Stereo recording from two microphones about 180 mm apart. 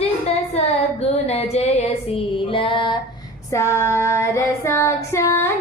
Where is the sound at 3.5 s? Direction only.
15° left (ahead or behind).